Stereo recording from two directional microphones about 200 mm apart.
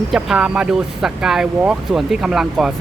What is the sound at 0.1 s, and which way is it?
Speech, 5° right (ahead or behind).